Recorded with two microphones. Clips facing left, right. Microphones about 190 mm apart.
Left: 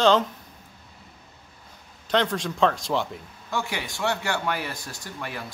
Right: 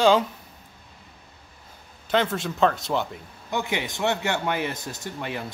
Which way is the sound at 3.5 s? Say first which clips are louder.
Right 2 dB; 20° right (ahead or behind).